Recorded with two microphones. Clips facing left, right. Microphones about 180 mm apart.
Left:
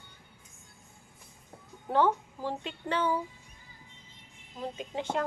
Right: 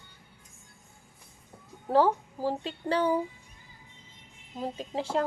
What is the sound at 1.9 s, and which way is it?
Speech, 35° right (ahead or behind).